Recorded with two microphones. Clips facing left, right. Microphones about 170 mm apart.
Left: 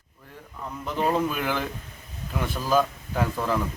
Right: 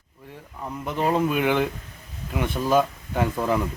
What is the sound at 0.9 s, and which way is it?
Speech, 5° right (ahead or behind).